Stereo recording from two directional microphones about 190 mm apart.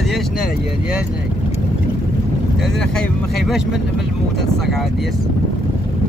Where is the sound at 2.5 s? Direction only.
Centre (ahead or behind).